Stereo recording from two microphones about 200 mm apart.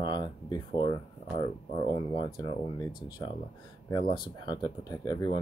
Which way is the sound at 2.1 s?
25° left (ahead or behind).